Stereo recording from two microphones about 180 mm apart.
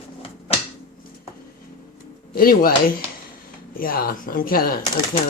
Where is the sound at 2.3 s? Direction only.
55° left (ahead or behind).